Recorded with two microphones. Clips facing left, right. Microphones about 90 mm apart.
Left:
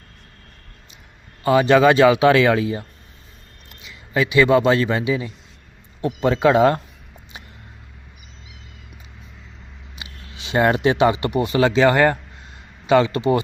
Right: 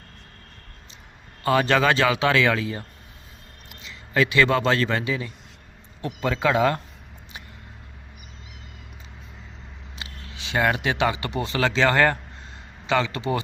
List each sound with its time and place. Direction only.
1.5 s speech: 15° left (ahead or behind)
3.8 s a man's voice: 10° left (ahead or behind)
10.4 s speech: 25° left (ahead or behind)